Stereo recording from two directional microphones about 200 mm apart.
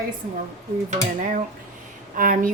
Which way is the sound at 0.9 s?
35° right (ahead or behind).